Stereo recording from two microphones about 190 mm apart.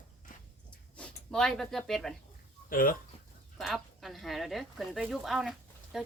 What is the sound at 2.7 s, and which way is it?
Speech, 50° left (ahead or behind).